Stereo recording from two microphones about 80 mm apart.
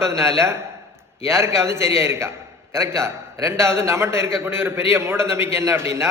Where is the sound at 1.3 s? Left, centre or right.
Right.